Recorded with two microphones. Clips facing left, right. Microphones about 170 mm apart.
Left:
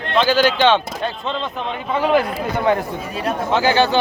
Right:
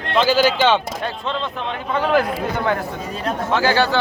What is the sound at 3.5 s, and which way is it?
Speech, 20° left (ahead or behind).